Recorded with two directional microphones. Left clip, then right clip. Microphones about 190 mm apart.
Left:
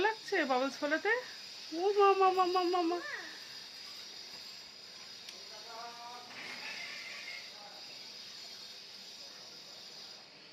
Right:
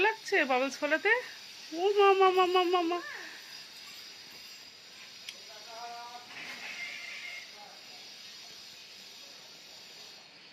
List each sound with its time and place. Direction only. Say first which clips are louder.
0.0 s speech: right 4 dB; 20° right (ahead or behind)